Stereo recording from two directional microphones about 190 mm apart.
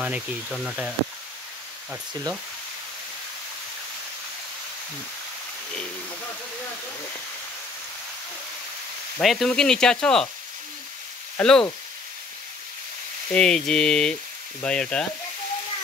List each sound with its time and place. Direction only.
0.0 s speech: centre (ahead or behind)
9.2 s speech: centre (ahead or behind)
11.3 s speech: 5° left (ahead or behind)
13.3 s speech: 5° left (ahead or behind)